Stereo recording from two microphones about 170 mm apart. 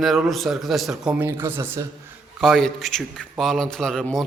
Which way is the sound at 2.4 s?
Centre (ahead or behind).